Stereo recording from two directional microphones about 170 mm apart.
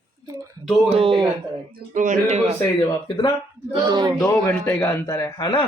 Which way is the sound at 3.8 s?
25° right (ahead or behind).